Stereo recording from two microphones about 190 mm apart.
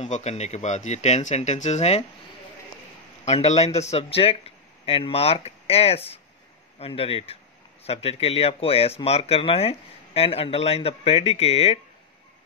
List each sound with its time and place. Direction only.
0.0 s speech: 35° left (ahead or behind)
3.3 s speech: 35° left (ahead or behind)